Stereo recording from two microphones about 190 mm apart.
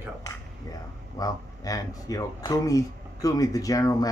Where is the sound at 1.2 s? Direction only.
20° left (ahead or behind).